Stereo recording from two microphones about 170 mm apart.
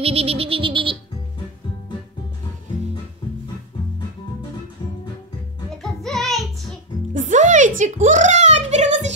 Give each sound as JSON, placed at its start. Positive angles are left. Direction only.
{"t": 0.0, "sound": "music", "side_deg": -35}
{"t": 5.8, "sound": "music", "side_deg": 0}
{"t": 7.2, "sound": "a sound", "side_deg": -45}